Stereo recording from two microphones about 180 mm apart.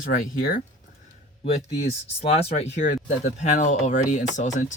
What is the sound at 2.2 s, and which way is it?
Speech, 35° left (ahead or behind).